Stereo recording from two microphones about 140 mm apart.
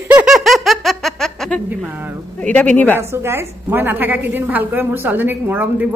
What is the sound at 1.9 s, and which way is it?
Speech, 15° right (ahead or behind).